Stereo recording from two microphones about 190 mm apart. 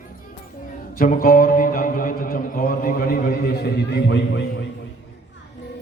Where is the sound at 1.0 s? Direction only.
50° left (ahead or behind); by 4.4 s 65° left (ahead or behind).